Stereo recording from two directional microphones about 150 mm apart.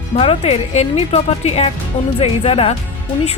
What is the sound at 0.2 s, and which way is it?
Speech, 40° left (ahead or behind).